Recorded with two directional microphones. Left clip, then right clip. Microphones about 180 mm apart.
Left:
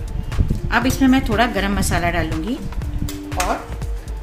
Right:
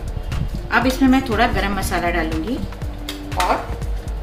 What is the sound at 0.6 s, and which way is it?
A woman's voice, 60° left (ahead or behind).